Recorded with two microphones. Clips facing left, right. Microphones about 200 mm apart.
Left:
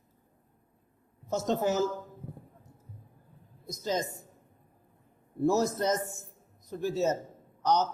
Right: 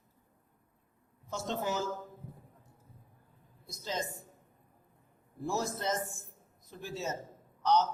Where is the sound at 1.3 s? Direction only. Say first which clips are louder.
Left 7 dB; 40° left (ahead or behind).